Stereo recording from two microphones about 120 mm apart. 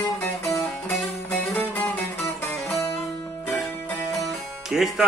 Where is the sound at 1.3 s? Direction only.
15° left (ahead or behind).